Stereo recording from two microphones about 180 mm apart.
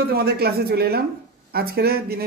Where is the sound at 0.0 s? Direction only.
60° right (ahead or behind).